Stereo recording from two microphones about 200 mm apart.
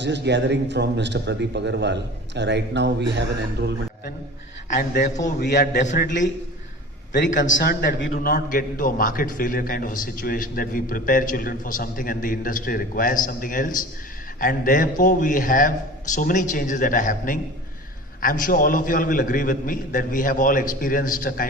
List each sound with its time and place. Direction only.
0.0 s a man's voice: 60° right (ahead or behind)
4.7 s a man's voice: 50° left (ahead or behind)
5.8 s speech: 35° left (ahead or behind)
7.4 s a man's voice: 50° left (ahead or behind)